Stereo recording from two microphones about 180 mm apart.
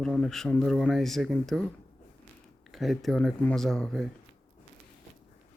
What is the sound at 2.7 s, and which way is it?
Speech, centre (ahead or behind).